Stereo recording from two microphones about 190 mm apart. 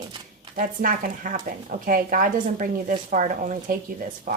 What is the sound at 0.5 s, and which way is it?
A woman's voice, 45° right (ahead or behind).